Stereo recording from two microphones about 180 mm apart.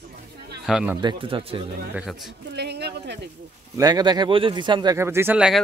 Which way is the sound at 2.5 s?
65° right (ahead or behind).